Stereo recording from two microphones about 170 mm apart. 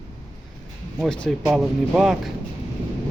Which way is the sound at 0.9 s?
Centre (ahead or behind).